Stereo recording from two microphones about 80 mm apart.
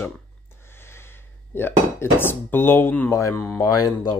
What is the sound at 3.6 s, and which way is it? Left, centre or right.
Speech, left.